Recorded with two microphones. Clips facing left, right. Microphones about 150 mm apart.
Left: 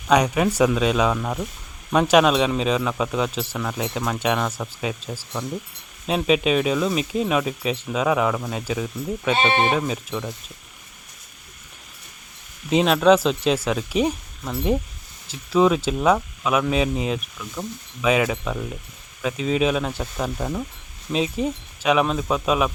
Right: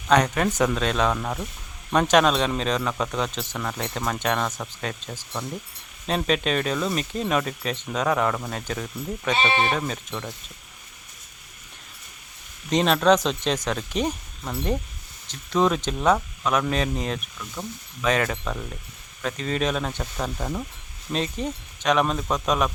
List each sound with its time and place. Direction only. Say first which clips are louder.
0.1 s speech: left 2 dB; 10° left (ahead or behind)
9.3 s speech: left 3 dB; 20° left (ahead or behind)
9.7 s speech: left 4 dB; 5° left (ahead or behind)
12.7 s speech: left 3 dB; 5° left (ahead or behind)